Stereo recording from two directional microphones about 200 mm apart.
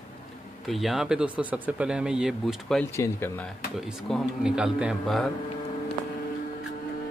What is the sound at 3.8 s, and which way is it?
Speech, 5° right (ahead or behind).